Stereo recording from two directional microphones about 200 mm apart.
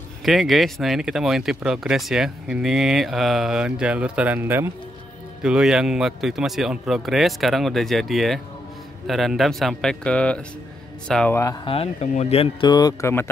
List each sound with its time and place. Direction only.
0.2 s speech: centre (ahead or behind)
11.6 s speech: 30° left (ahead or behind); by 13.3 s 15° left (ahead or behind)